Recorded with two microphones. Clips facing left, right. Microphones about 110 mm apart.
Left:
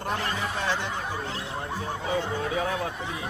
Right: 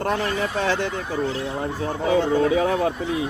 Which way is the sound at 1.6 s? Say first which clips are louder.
Right 8 dB; 90° right.